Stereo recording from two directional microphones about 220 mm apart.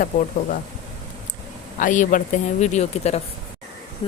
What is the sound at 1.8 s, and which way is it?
Speech, 35° left (ahead or behind).